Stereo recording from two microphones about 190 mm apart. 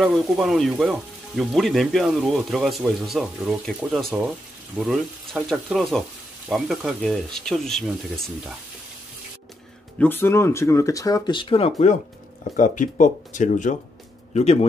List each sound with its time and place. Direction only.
0.0 s speech: centre (ahead or behind)
9.9 s speech: 10° left (ahead or behind); by 14.7 s 35° left (ahead or behind)